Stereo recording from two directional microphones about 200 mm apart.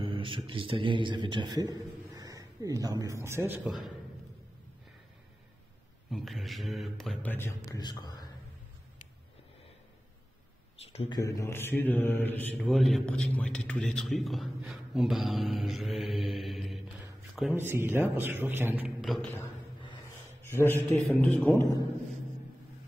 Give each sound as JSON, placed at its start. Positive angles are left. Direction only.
{"t": 0.0, "sound": "a man's voice", "side_deg": -25}
{"t": 6.0, "sound": "speech", "side_deg": 0}
{"t": 10.9, "sound": "a sound", "side_deg": 30}
{"t": 11.1, "sound": "a man's voice", "side_deg": 15}
{"t": 20.4, "sound": "a man's voice", "side_deg": 10}